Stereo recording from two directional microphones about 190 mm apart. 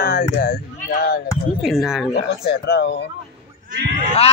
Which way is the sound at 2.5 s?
60° left (ahead or behind).